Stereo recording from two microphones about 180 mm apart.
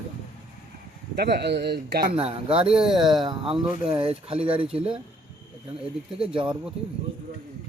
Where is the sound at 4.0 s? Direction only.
30° right (ahead or behind).